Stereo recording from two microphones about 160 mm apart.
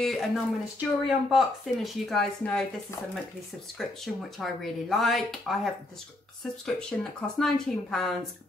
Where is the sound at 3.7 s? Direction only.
Centre (ahead or behind).